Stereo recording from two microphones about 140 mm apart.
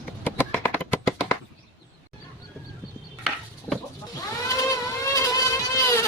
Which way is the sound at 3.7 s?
5° left (ahead or behind).